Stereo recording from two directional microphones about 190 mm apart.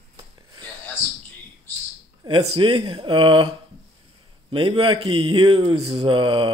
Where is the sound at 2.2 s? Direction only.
25° right (ahead or behind).